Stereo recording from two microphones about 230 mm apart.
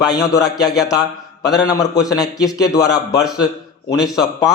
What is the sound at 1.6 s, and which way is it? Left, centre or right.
A man's voice, centre.